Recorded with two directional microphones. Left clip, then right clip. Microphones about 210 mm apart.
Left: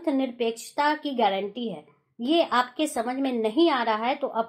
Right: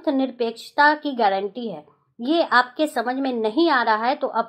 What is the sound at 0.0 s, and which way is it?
A woman's voice, 30° right (ahead or behind).